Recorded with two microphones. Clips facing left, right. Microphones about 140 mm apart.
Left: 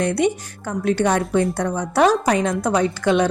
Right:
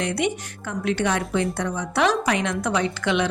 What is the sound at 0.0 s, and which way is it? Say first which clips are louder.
A woman's voice: left 5 dB; 40° left (ahead or behind).